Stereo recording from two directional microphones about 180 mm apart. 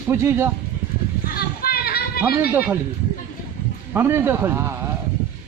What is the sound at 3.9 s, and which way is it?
Speech, 15° right (ahead or behind).